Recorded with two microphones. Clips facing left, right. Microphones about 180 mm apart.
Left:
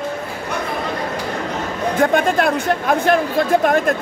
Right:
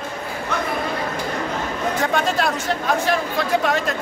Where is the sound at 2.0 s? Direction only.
55° left (ahead or behind).